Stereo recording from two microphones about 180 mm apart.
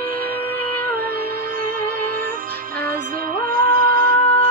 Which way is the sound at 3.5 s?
50° right (ahead or behind).